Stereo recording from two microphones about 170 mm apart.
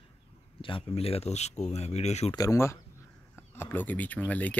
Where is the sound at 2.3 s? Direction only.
20° left (ahead or behind).